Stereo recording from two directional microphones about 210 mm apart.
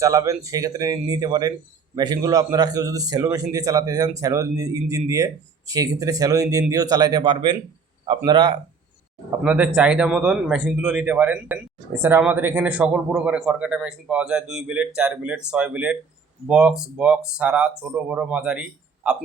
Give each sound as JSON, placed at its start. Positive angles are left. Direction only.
{"t": 0.0, "sound": "speech", "side_deg": -15}
{"t": 9.4, "sound": "a man's voice", "side_deg": -5}